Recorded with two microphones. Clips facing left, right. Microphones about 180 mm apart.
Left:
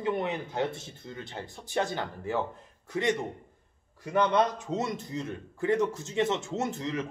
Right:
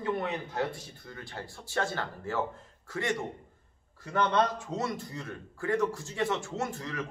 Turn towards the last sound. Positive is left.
turn(degrees=20)  # may be behind; listen again after turning